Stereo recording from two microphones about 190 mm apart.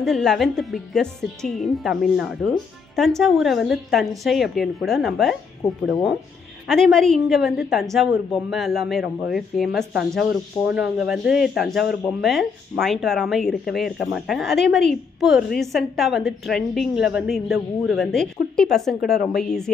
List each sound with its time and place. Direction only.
0.0 s a woman's voice: centre (ahead or behind)
5.6 s speech: 20° left (ahead or behind)
6.7 s a woman's voice: centre (ahead or behind)